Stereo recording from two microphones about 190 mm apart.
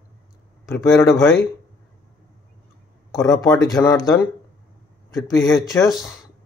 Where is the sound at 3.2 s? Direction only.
20° left (ahead or behind).